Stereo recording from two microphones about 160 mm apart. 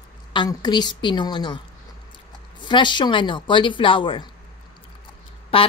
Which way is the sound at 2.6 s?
30° left (ahead or behind).